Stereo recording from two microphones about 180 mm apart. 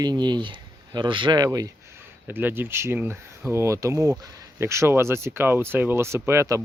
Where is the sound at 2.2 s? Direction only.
10° right (ahead or behind).